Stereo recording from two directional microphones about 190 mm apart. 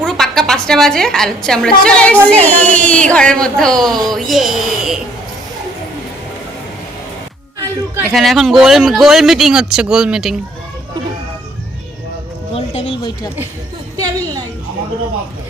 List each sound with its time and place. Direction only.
0.0 s a woman's voice: centre (ahead or behind)
7.6 s music: 15° right (ahead or behind)
8.1 s speech: centre (ahead or behind)
12.5 s a sound: 30° left (ahead or behind)